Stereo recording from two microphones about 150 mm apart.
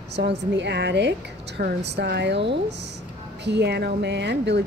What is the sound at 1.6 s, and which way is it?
Speech, 90° right.